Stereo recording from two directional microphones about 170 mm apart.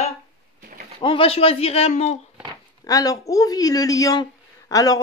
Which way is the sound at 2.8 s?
20° left (ahead or behind).